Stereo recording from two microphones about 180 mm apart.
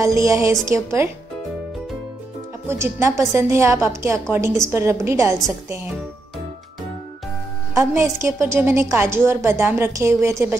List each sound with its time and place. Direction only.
0.0 s a woman's voice: 15° right (ahead or behind)
2.7 s a woman's voice: 15° right (ahead or behind)
7.7 s a woman's voice: 15° right (ahead or behind)